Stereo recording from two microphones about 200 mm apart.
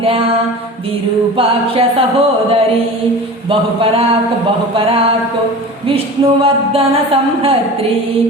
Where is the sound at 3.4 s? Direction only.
30° right (ahead or behind).